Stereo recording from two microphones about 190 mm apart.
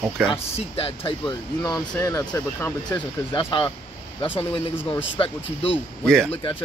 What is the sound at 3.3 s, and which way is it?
Speech, 25° left (ahead or behind).